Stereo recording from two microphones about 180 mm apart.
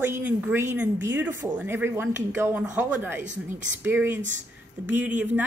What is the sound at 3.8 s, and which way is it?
Speech, 10° right (ahead or behind).